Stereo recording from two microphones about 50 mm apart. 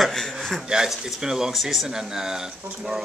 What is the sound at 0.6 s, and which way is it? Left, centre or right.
Speech, centre.